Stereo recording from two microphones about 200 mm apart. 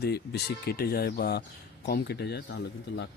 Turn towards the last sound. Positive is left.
turn(degrees=60)  # may be behind; listen again after turning